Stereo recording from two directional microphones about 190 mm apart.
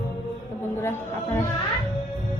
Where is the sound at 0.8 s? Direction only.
10° left (ahead or behind).